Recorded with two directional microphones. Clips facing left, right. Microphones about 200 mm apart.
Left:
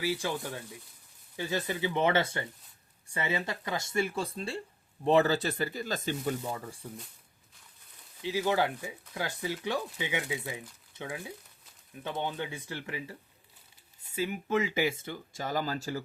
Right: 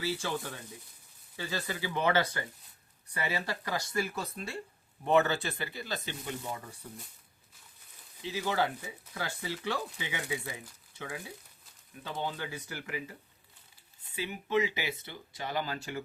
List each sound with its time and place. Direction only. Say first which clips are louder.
0.0 s speech: left 2 dB; 15° left (ahead or behind)
1.4 s speech: left 4 dB; 20° left (ahead or behind); by 6.3 s 45° left (ahead or behind)
8.2 s speech: left 3 dB; 15° left (ahead or behind); by 13.1 s 30° left (ahead or behind)
14.2 s speech: left 1 dB; 45° left (ahead or behind)